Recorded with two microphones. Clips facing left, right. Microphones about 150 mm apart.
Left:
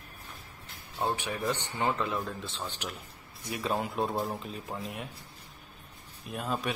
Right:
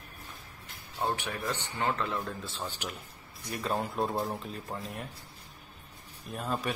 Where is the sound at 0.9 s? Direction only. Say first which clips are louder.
Left 1 dB; 15° left (ahead or behind).